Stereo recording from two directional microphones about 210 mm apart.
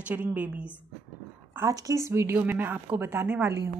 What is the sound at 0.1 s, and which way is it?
A woman's voice, 10° right (ahead or behind).